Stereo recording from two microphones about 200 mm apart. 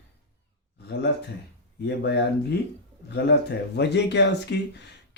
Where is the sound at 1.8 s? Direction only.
55° left (ahead or behind).